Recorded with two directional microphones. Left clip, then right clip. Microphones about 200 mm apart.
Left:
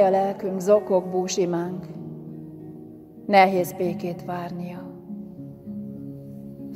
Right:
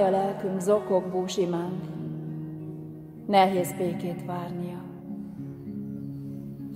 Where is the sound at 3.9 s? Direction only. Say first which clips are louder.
Left 3 dB; 45° left (ahead or behind).